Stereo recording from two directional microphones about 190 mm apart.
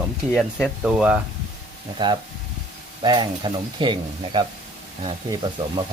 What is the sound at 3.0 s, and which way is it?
Speech, 20° right (ahead or behind).